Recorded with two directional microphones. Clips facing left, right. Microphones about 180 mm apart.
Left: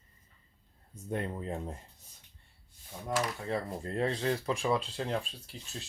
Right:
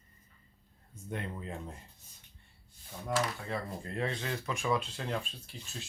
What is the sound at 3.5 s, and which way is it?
Speech, 35° left (ahead or behind).